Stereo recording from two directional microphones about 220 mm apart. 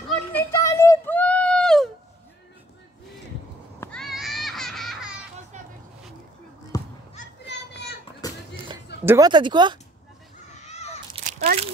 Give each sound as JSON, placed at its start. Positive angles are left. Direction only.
{"t": 0.0, "sound": "a sound", "side_deg": 5}
{"t": 3.8, "sound": "children playing", "side_deg": 5}
{"t": 6.7, "sound": "basketball bounce", "side_deg": 15}
{"t": 9.0, "sound": "speech", "side_deg": -15}
{"t": 11.2, "sound": "crunch", "side_deg": -35}